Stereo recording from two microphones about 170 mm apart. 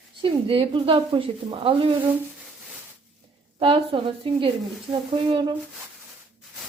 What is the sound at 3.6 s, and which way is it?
Speech, 30° right (ahead or behind).